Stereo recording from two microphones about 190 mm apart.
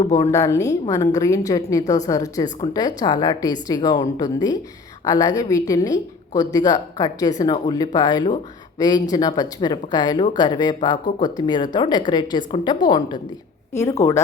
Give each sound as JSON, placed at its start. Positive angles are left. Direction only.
{"t": 0.0, "sound": "a woman's voice", "side_deg": 15}
{"t": 13.7, "sound": "a woman's voice", "side_deg": 15}